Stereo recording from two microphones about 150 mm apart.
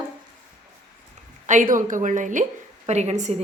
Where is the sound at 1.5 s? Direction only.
60° right (ahead or behind).